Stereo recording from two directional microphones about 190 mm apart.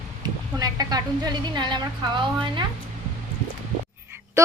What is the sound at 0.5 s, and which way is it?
A child's voice, 20° right (ahead or behind).